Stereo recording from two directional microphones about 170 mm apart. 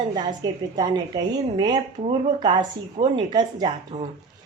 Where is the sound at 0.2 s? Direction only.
25° right (ahead or behind).